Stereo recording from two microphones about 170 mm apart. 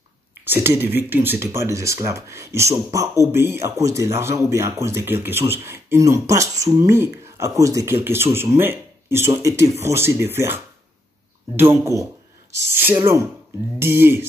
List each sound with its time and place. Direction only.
0.5 s speech: 15° right (ahead or behind)